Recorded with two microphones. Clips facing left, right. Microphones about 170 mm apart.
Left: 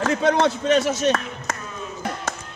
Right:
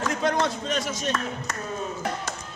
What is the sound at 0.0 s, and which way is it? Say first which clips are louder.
A man's voice: left 6 dB; 70° left (ahead or behind).